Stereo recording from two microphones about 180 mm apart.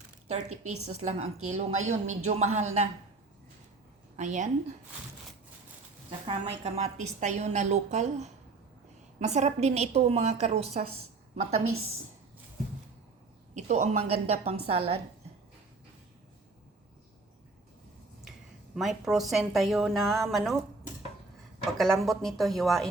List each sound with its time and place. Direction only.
0.3 s a woman's voice: 40° right (ahead or behind)
4.2 s a woman's voice: 45° right (ahead or behind)
6.1 s a woman's voice: 30° right (ahead or behind)
13.5 s a woman's voice: 40° right (ahead or behind)
18.8 s a woman's voice: centre (ahead or behind)
21.8 s a woman's voice: centre (ahead or behind)